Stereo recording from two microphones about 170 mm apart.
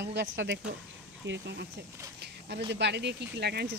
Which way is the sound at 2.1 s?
80° right.